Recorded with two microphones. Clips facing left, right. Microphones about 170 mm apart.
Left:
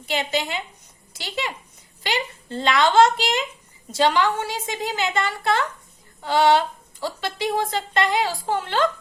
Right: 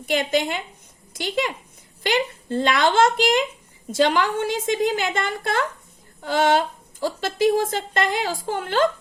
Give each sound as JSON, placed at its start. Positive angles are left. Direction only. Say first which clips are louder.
{"t": 0.0, "sound": "a woman's voice", "louder": "right 4 dB", "side_deg": -50}